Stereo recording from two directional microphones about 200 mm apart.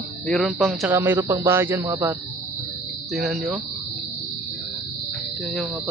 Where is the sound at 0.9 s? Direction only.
10° right (ahead or behind).